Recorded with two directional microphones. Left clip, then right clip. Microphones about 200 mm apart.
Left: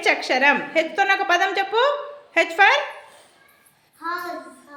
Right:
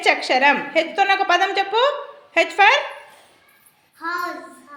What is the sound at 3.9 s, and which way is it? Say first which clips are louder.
Child singing: right 2 dB; 30° right (ahead or behind).